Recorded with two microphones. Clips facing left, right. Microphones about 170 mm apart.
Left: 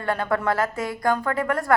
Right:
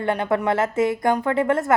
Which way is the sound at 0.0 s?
20° right (ahead or behind).